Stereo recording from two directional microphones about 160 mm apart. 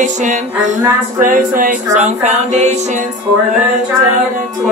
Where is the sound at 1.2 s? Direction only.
60° right (ahead or behind).